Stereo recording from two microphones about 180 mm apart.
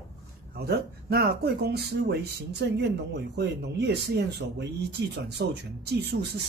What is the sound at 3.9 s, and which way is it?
Speech, 70° right (ahead or behind).